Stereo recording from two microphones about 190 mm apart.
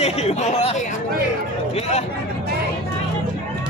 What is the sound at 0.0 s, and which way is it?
Speech, 35° left (ahead or behind).